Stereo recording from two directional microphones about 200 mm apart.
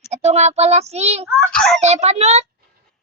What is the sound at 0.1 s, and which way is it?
A child's voice, 35° right (ahead or behind).